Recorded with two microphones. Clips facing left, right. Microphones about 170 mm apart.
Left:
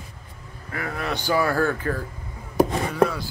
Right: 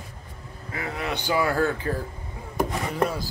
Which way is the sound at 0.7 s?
20° right (ahead or behind).